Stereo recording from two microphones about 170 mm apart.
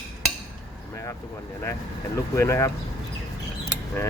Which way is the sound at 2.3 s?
15° left (ahead or behind).